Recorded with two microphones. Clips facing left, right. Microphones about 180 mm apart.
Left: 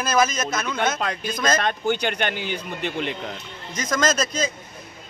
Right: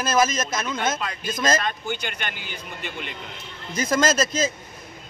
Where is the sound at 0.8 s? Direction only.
50° left (ahead or behind).